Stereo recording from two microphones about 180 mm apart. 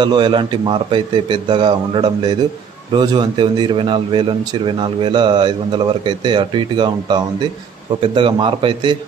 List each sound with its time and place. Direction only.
0.0 s a man's voice: 25° right (ahead or behind)